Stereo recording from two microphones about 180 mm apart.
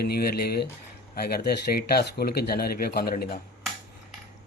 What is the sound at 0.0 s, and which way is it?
Speech, 60° left (ahead or behind).